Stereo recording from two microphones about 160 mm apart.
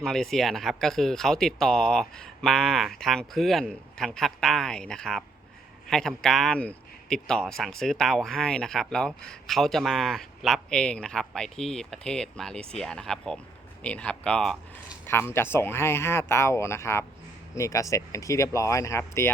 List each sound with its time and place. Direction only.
0.0 s speech: 5° left (ahead or behind)
15.0 s speech: 15° left (ahead or behind)